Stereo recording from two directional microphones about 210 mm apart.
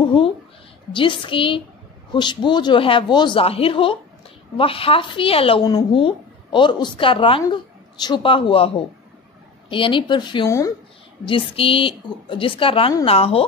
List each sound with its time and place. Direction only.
0.9 s a woman's voice: 25° left (ahead or behind)